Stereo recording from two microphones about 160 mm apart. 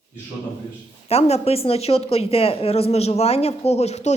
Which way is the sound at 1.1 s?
40° left (ahead or behind).